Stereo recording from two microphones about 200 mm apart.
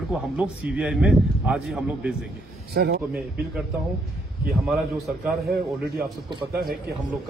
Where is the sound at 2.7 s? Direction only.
50° right (ahead or behind).